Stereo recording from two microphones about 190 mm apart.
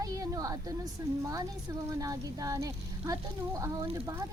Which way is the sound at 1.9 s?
20° right (ahead or behind).